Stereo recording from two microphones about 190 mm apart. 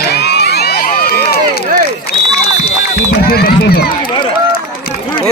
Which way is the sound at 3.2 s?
55° left (ahead or behind).